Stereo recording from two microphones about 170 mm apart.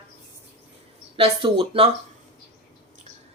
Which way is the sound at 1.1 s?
30° right (ahead or behind).